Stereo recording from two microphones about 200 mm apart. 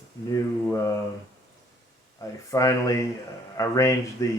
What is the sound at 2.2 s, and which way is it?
Speech, 15° left (ahead or behind).